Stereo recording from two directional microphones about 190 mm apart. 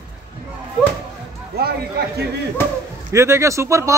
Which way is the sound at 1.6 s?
55° right (ahead or behind).